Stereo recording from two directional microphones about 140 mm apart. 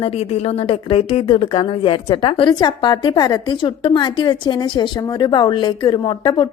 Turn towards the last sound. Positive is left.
turn(degrees=35)  # may be behind; listen again after turning